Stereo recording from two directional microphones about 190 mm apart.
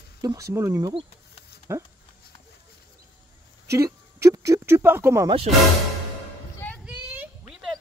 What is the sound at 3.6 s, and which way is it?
Speech, 15° right (ahead or behind).